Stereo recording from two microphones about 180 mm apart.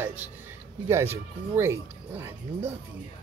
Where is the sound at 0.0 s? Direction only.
10° right (ahead or behind).